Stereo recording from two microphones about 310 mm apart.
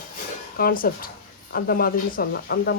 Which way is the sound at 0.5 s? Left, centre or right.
Left.